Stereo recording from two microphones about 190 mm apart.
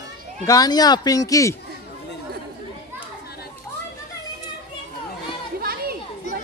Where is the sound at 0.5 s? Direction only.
20° left (ahead or behind).